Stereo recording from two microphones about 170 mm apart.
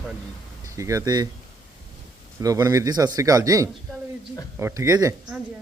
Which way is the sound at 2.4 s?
20° right (ahead or behind).